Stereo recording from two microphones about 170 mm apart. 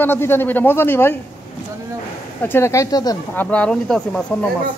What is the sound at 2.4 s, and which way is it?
Speech, 15° left (ahead or behind).